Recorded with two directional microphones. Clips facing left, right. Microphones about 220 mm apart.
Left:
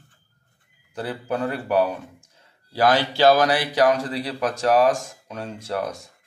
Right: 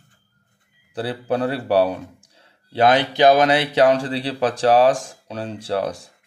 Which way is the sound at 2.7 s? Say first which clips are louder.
Right 3 dB; 20° right (ahead or behind).